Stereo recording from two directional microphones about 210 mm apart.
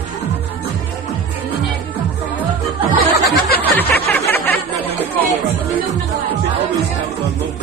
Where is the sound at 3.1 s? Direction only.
50° left (ahead or behind).